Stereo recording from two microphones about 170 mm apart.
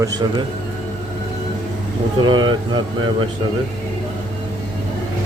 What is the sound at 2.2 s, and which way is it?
Speech, 30° right (ahead or behind).